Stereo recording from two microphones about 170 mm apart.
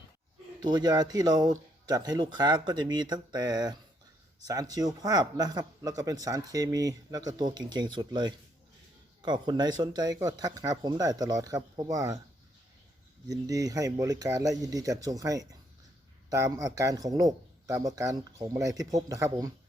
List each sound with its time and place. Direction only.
0.6 s speech: 25° right (ahead or behind)
13.2 s speech: 20° right (ahead or behind)